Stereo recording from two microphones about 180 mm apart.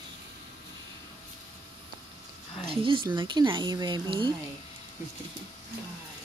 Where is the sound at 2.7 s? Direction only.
30° right (ahead or behind).